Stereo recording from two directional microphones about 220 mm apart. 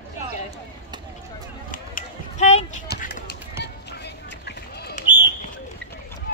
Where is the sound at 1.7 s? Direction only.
35° left (ahead or behind).